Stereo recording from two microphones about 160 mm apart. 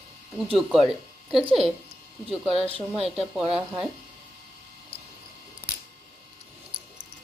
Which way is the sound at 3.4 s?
5° right (ahead or behind).